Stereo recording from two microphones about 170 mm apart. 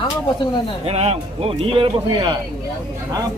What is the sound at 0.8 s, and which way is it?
Speech, 35° right (ahead or behind).